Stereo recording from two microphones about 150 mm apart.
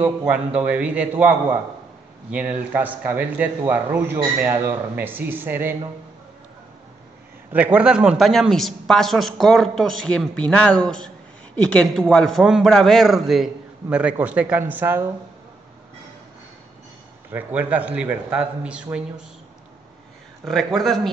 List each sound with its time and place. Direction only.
0.0 s a man's voice: 10° right (ahead or behind)
2.3 s a man's voice: 10° right (ahead or behind)
7.5 s a man's voice: 10° right (ahead or behind)
17.3 s a man's voice: 10° right (ahead or behind)
20.4 s a man's voice: 5° left (ahead or behind)